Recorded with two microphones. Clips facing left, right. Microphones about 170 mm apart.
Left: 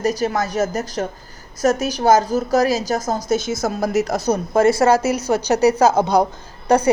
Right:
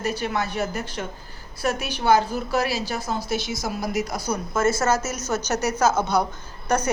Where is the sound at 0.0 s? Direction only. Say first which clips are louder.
Left 6 dB; 40° left (ahead or behind).